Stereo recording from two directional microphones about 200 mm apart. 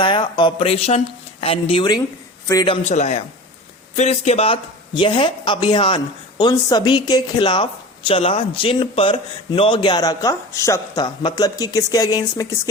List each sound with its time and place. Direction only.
0.0 s speech: 25° left (ahead or behind)
2.8 s a man's voice: 35° left (ahead or behind); by 12.6 s 15° left (ahead or behind)